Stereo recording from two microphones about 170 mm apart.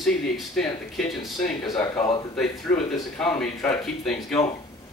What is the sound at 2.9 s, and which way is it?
Speech, 5° left (ahead or behind).